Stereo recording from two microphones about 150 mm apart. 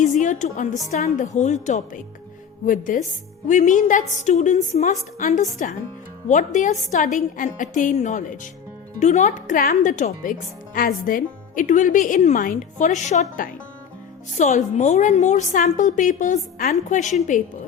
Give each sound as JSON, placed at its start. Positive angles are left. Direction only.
{"t": 0.0, "sound": "a woman's voice", "side_deg": 55}
{"t": 2.6, "sound": "a woman's voice", "side_deg": 60}
{"t": 9.6, "sound": "a woman's voice", "side_deg": 65}